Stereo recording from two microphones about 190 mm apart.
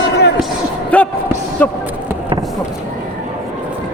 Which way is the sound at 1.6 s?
10° left (ahead or behind).